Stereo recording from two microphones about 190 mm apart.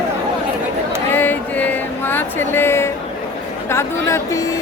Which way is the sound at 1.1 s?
10° left (ahead or behind).